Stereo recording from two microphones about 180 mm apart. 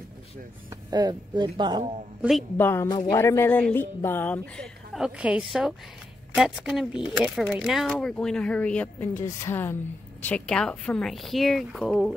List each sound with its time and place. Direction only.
0.8 s speech: 20° right (ahead or behind)
2.5 s speech: 15° left (ahead or behind)